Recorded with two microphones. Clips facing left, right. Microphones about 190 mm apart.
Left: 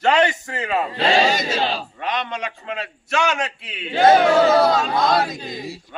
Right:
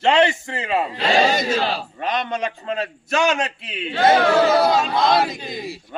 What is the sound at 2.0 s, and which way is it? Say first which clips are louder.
A man's voice: right 5 dB; 45° right (ahead or behind).